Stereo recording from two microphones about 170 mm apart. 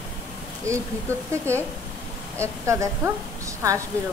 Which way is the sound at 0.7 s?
15° right (ahead or behind).